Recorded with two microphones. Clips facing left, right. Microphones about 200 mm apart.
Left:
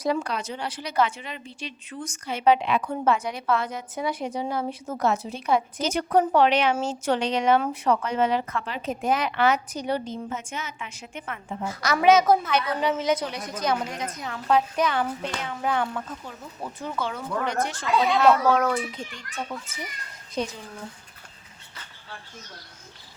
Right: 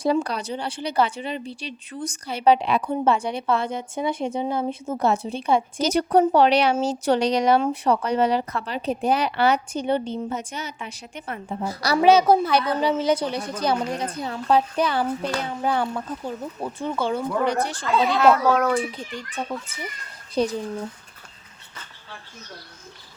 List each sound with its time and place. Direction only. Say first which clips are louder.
0.0 s a woman's voice: right 4 dB; 35° right (ahead or behind)
18.2 s a child's voice: right 2 dB; centre (ahead or behind)
18.8 s speech: right 4 dB; 35° right (ahead or behind)